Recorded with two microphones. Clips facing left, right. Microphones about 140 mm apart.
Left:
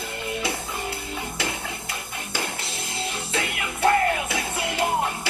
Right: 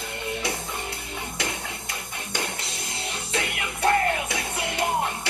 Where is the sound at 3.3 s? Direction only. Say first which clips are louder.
Even; 25° left (ahead or behind).